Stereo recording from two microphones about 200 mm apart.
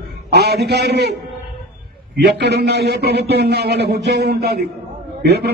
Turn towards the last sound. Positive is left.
turn(degrees=-55)  # may be behind; listen again after turning